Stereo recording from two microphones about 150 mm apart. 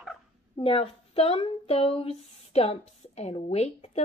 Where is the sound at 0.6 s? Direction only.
40° left (ahead or behind).